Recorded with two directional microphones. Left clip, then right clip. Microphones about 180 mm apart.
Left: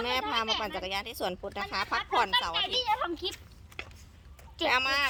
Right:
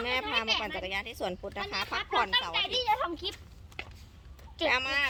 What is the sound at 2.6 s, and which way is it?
Speech, 25° right (ahead or behind).